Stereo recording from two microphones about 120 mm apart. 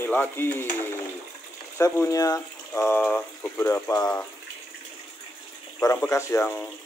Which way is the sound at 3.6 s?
25° left (ahead or behind).